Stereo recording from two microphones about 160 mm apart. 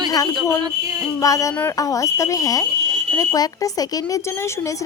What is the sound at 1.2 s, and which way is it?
Speech, 20° left (ahead or behind).